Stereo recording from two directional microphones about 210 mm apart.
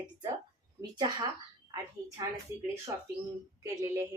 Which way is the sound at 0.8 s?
20° right (ahead or behind).